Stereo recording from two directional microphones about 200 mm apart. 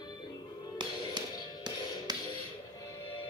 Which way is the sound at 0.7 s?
20° right (ahead or behind).